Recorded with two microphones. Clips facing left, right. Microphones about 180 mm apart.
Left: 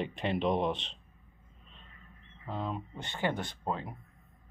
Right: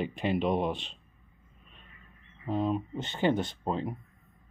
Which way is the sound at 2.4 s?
15° right (ahead or behind).